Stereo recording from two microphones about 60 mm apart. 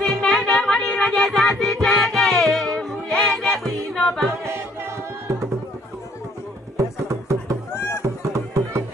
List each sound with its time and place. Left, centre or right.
0.0 s music: centre
4.5 s music: right
7.1 s music: right
7.7 s a sound: left